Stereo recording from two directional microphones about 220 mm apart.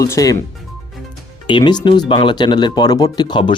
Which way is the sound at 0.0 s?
15° left (ahead or behind).